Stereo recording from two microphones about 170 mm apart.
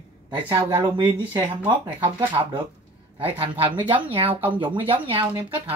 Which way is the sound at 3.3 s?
30° right (ahead or behind).